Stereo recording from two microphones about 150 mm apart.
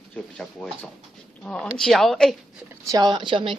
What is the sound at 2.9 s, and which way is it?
Speech, 30° right (ahead or behind).